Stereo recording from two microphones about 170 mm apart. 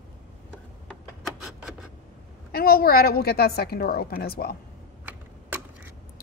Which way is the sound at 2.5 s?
65° left (ahead or behind).